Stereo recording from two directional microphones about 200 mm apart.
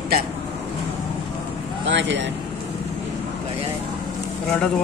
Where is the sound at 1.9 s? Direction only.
65° right (ahead or behind).